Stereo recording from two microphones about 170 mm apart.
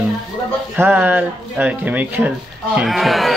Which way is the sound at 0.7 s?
10° right (ahead or behind).